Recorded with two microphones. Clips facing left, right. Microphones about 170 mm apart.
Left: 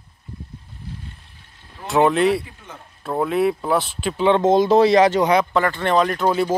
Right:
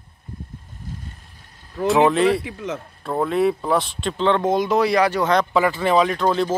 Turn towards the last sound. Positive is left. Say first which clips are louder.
# even
turn(degrees=5)  # may be behind; listen again after turning